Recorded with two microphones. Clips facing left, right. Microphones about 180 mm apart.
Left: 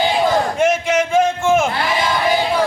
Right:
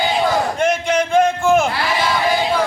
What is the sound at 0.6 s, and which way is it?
A man's voice, 5° left (ahead or behind).